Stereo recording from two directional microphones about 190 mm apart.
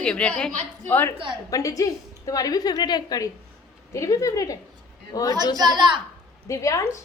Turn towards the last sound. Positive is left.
turn(degrees=15)  # may be behind; listen again after turning